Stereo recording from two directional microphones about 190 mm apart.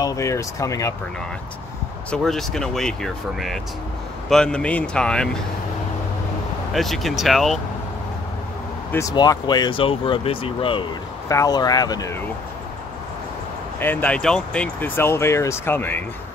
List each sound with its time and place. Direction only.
0.0 s speech: 15° left (ahead or behind)
2.0 s speech: centre (ahead or behind)
6.7 s speech: centre (ahead or behind)
9.1 s speech: 20° left (ahead or behind)
11.2 s speech: 15° left (ahead or behind)
13.7 s speech: 10° left (ahead or behind)